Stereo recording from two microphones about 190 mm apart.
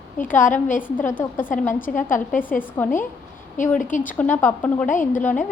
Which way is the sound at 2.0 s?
45° left (ahead or behind).